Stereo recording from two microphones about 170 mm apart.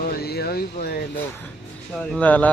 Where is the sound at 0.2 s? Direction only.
70° left (ahead or behind).